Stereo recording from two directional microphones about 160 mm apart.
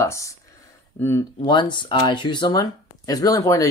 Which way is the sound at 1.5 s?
30° left (ahead or behind).